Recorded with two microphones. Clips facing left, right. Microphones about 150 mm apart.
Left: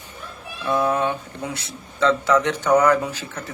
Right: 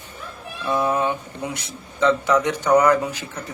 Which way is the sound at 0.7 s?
20° right (ahead or behind).